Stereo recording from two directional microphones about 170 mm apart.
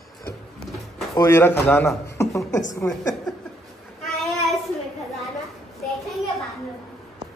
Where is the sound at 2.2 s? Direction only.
20° left (ahead or behind).